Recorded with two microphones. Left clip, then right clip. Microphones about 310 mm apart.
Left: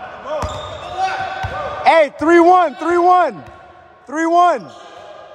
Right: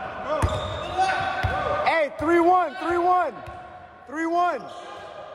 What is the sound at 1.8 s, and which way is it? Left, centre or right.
A man's voice, left.